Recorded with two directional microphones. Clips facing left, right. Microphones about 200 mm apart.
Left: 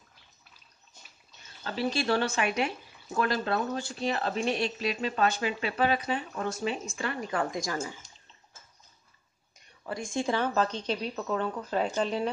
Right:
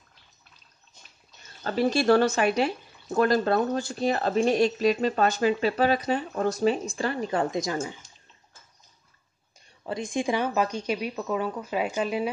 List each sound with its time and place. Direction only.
1.6 s speech: 45° right (ahead or behind); by 7.9 s 20° right (ahead or behind)
9.6 s a woman's voice: 20° right (ahead or behind)